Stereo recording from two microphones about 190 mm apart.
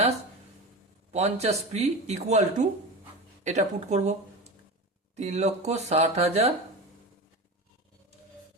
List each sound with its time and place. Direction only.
1.1 s speech: 35° right (ahead or behind)
5.1 s speech: 35° right (ahead or behind)